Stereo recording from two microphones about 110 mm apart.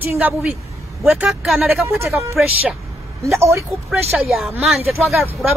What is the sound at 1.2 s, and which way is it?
Speech, centre (ahead or behind).